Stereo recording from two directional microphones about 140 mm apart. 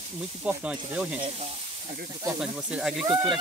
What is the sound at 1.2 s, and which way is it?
Speech, 45° right (ahead or behind).